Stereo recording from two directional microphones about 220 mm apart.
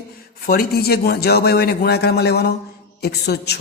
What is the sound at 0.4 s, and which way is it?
Speech, 45° left (ahead or behind).